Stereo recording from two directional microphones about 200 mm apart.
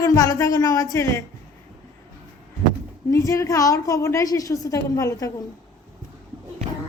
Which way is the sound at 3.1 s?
15° left (ahead or behind).